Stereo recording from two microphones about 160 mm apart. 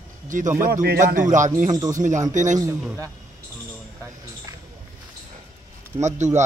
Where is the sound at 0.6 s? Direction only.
70° right (ahead or behind).